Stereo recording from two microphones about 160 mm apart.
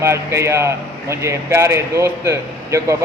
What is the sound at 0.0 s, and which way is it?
Speech, 15° right (ahead or behind).